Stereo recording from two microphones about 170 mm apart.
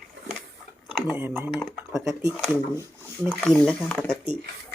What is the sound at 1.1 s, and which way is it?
Speech, 10° right (ahead or behind).